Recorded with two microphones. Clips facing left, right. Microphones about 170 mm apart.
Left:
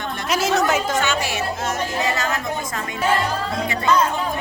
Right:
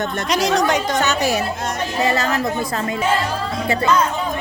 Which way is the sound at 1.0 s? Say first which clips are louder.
Right 4 dB; 40° right (ahead or behind).